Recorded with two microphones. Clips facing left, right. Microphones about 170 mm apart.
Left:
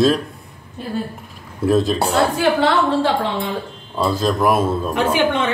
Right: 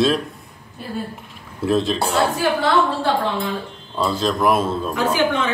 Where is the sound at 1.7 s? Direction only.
5° left (ahead or behind).